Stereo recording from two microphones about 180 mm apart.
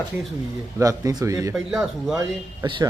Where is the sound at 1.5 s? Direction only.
5° right (ahead or behind).